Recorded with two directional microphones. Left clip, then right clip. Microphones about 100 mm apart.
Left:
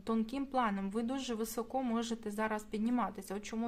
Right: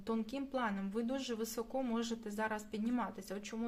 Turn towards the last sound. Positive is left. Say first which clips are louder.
# left 3 dB
turn(degrees=45)  # may be behind; listen again after turning